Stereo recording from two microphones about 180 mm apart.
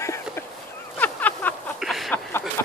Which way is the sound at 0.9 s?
10° left (ahead or behind).